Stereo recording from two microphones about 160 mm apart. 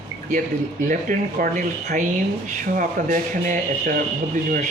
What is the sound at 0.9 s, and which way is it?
Speech, 55° right (ahead or behind).